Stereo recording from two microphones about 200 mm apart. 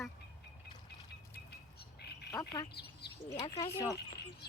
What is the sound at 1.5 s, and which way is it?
Squawk, 55° left (ahead or behind).